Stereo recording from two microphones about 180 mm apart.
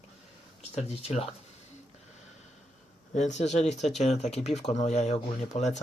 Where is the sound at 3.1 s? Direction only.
40° left (ahead or behind).